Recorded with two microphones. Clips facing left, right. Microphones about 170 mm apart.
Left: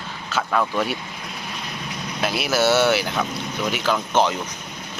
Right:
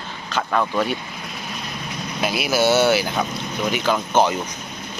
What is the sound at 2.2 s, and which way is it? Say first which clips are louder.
Speech: right 1 dB; 5° right (ahead or behind).